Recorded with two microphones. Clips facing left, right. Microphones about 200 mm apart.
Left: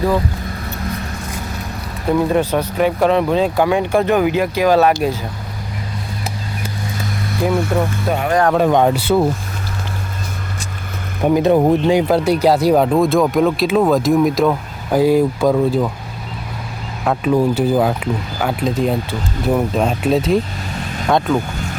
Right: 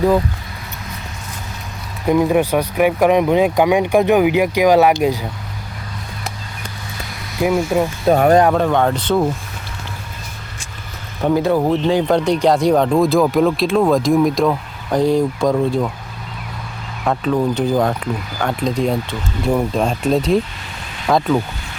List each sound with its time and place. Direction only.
2.0 s speech: 10° right (ahead or behind)
7.4 s speech: 15° right (ahead or behind)
8.1 s speech: 40° right (ahead or behind)
8.5 s speech: 15° left (ahead or behind)
11.2 s speech: 15° left (ahead or behind)
17.0 s speech: 5° left (ahead or behind)